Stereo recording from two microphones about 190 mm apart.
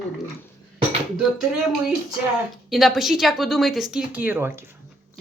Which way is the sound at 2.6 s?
Centre (ahead or behind).